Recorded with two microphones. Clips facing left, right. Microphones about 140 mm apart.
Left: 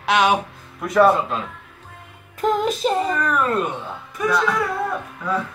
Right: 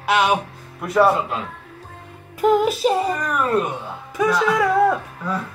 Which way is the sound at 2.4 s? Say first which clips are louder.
Right 3 dB; 5° right (ahead or behind).